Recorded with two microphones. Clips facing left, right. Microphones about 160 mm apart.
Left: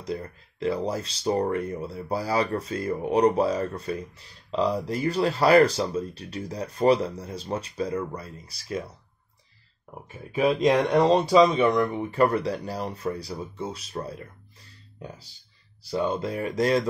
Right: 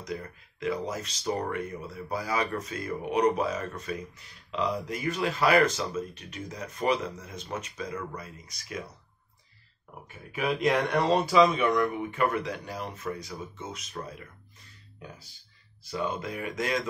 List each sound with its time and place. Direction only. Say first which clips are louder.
0.0 s speech: left 4 dB; 30° left (ahead or behind)
10.3 s speech: left 5 dB; 30° left (ahead or behind)
12.0 s speech: left 5 dB; 35° left (ahead or behind)
15.8 s speech: left 6 dB; 30° left (ahead or behind)